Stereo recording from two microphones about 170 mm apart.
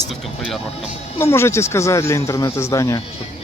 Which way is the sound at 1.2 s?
15° left (ahead or behind).